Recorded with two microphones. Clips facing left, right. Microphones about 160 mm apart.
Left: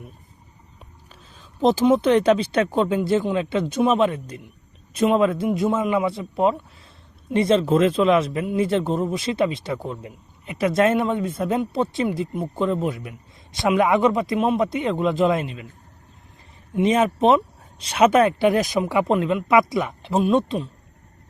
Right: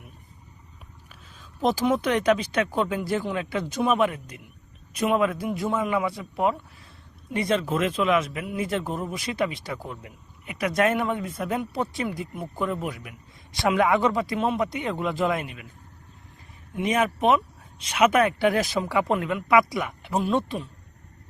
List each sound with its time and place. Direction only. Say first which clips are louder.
1.6 s speech: left 6 dB; 25° left (ahead or behind)
16.7 s speech: left 5 dB; 25° left (ahead or behind)